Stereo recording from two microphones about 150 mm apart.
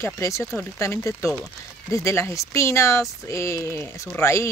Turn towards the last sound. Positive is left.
turn(degrees=20)  # may be behind; listen again after turning